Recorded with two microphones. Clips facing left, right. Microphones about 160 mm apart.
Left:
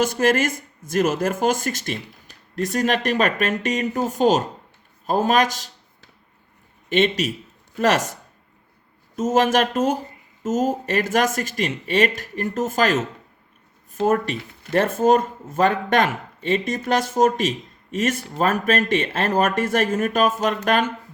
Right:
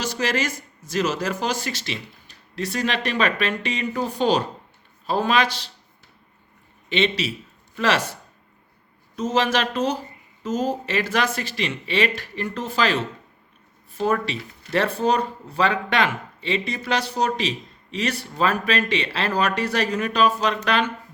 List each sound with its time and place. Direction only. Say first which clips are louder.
0.0 s speech: left 6 dB; 50° left (ahead or behind)
6.9 s speech: left 3 dB; 45° left (ahead or behind)